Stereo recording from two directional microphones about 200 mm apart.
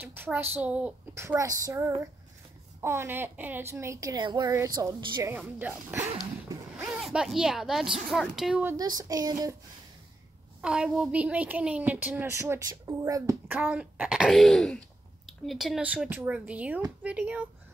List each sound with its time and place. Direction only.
0.0 s a woman's voice: 10° right (ahead or behind)
8.7 s speech: 20° right (ahead or behind)
10.6 s speech: 5° right (ahead or behind)